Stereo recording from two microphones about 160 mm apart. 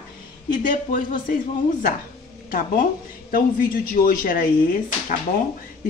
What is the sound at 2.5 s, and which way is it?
Speech, 60° left (ahead or behind).